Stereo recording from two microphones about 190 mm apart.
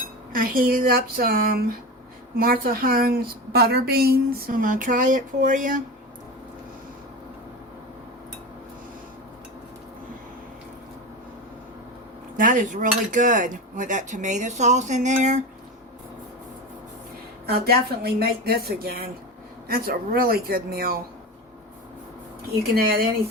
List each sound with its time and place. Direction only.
0.3 s a woman's voice: 50° right (ahead or behind)
12.4 s speech: 45° right (ahead or behind)
17.4 s a woman's voice: 55° right (ahead or behind)
22.7 s a woman's voice: 55° right (ahead or behind)